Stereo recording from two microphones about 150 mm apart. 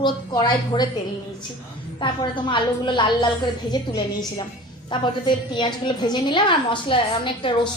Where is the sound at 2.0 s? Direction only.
30° left (ahead or behind).